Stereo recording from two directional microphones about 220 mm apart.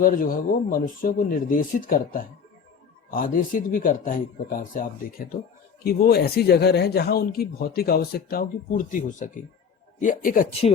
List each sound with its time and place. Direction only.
0.0 s speech: 40° left (ahead or behind)